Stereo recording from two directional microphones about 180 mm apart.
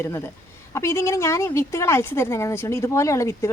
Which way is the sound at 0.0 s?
15° left (ahead or behind).